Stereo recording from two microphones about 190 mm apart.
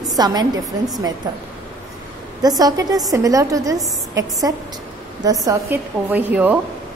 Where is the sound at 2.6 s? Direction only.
20° right (ahead or behind).